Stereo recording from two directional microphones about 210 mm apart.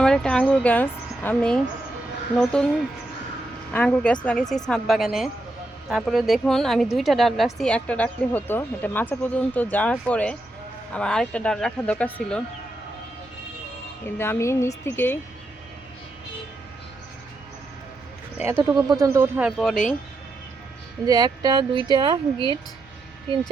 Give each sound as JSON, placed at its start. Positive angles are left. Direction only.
{"t": 0.0, "sound": "speech", "side_deg": 5}
{"t": 3.7, "sound": "a woman's voice", "side_deg": 10}
{"t": 14.2, "sound": "a woman's voice", "side_deg": 10}
{"t": 18.3, "sound": "speech", "side_deg": -10}
{"t": 21.1, "sound": "speech", "side_deg": -20}